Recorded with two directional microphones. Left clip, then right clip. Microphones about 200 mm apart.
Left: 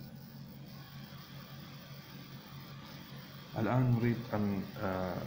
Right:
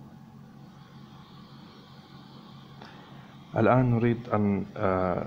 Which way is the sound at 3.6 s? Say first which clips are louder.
Right 11 dB; 55° right (ahead or behind).